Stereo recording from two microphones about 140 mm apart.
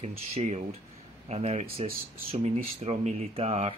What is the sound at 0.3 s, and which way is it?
Speech, 50° right (ahead or behind).